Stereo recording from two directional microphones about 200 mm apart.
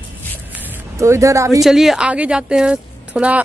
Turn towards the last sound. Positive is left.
turn(degrees=-5)  # may be behind; listen again after turning